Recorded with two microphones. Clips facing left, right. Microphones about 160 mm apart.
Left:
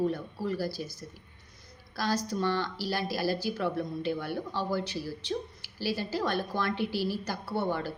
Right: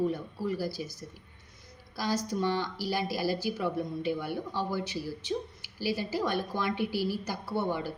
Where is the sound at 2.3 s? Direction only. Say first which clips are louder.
Even; 15° right (ahead or behind).